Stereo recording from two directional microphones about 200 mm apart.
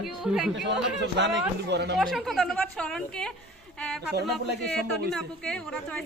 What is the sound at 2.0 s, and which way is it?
A woman's voice, centre (ahead or behind).